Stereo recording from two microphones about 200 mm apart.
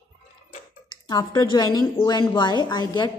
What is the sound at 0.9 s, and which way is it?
A woman's voice, 20° left (ahead or behind).